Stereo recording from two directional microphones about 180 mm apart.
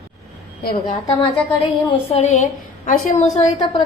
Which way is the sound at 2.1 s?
40° left (ahead or behind).